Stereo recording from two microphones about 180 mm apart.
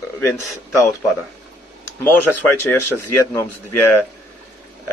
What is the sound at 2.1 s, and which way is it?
A man's voice, 10° left (ahead or behind).